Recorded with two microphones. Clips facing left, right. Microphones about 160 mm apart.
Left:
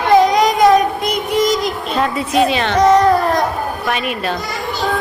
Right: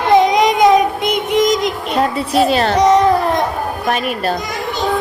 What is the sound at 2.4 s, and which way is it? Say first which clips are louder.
Speech: right 2 dB; 40° right (ahead or behind).